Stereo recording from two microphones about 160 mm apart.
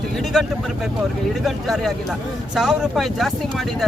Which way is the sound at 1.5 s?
Centre (ahead or behind).